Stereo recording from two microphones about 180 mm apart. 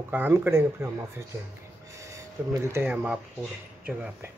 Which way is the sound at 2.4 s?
10° right (ahead or behind).